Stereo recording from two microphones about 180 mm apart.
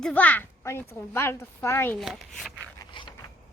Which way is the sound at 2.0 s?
Centre (ahead or behind).